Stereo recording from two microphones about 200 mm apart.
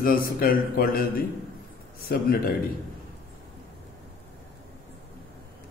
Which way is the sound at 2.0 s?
50° left (ahead or behind).